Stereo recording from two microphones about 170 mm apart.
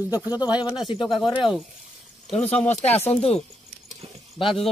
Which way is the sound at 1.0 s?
Centre (ahead or behind).